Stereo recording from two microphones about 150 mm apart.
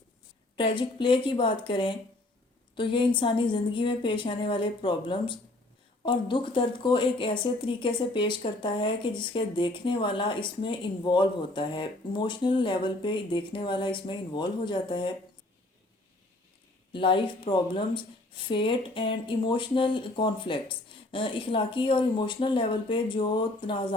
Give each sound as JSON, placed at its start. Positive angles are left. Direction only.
{"t": 0.5, "sound": "a woman's voice", "side_deg": 35}
{"t": 16.9, "sound": "a woman's voice", "side_deg": 35}